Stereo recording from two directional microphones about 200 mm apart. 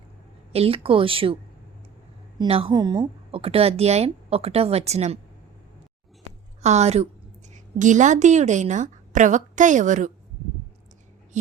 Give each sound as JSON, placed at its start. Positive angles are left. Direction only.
{"t": 0.5, "sound": "a woman's voice", "side_deg": -30}
{"t": 2.4, "sound": "speech", "side_deg": -25}
{"t": 6.6, "sound": "a woman's voice", "side_deg": -35}